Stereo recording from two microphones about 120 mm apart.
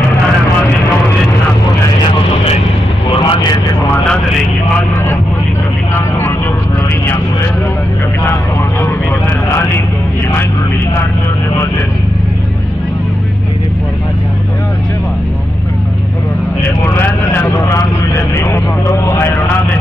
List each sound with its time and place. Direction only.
3.2 s vehicle: 35° left (ahead or behind)
16.8 s vehicle: 20° left (ahead or behind)